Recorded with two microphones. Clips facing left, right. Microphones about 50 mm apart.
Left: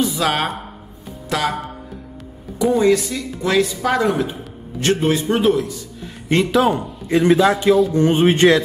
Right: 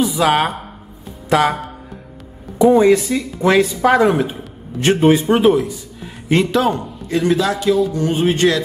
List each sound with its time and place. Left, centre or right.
0.0 s a woman's voice: centre
1.3 s a man's voice: centre
2.6 s a man's voice: right
6.2 s speech: centre
7.1 s speech: left